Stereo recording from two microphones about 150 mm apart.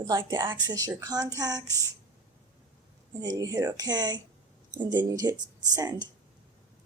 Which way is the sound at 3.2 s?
25° right (ahead or behind).